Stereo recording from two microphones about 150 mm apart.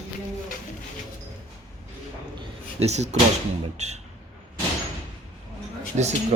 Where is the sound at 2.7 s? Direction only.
45° right (ahead or behind).